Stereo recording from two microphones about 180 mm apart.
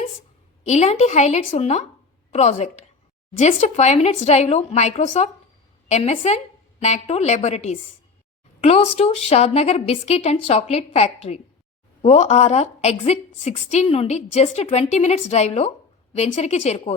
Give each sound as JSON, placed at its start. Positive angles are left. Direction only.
{"t": 0.6, "sound": "a woman's voice", "side_deg": 40}